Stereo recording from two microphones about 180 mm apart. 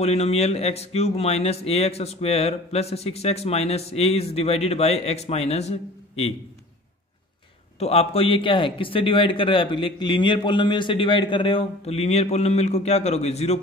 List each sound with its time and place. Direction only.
0.0 s speech: 35° left (ahead or behind)
7.8 s a man's voice: 35° left (ahead or behind)